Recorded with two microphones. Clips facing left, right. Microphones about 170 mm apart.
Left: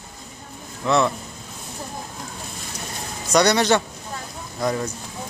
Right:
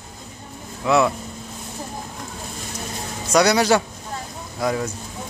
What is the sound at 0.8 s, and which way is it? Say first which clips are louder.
Speech: right 2 dB; 5° right (ahead or behind).